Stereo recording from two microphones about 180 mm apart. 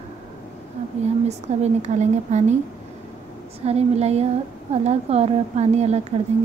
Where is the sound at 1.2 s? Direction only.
40° right (ahead or behind).